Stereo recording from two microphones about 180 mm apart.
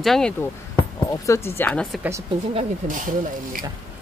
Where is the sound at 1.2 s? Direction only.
15° left (ahead or behind).